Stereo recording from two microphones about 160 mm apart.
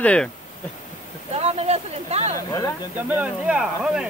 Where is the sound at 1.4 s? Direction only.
40° right (ahead or behind).